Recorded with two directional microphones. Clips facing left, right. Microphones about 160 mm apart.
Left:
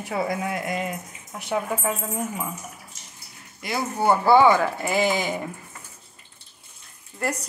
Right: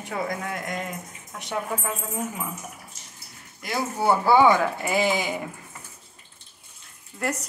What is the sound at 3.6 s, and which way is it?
A woman's voice, centre (ahead or behind).